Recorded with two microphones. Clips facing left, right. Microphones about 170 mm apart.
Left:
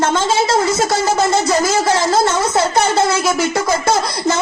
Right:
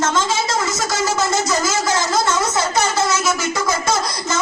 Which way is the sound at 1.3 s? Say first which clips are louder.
Left 4 dB; 55° left (ahead or behind).